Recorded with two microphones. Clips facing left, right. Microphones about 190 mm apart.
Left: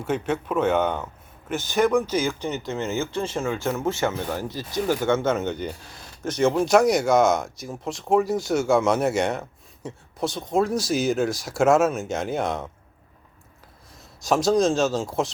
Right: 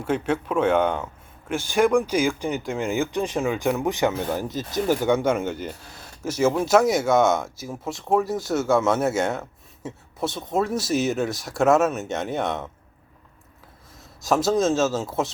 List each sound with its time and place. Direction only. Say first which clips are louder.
0.0 s speech: right 1 dB; 5° left (ahead or behind)
13.9 s speech: even; centre (ahead or behind)